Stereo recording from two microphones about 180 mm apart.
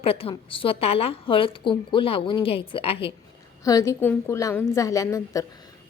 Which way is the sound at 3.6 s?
20° left (ahead or behind).